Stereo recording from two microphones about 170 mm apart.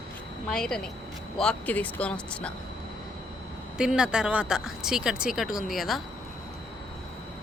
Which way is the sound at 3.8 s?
5° right (ahead or behind).